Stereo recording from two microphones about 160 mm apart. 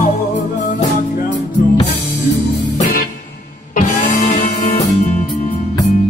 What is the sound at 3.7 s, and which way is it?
Music, 55° left (ahead or behind).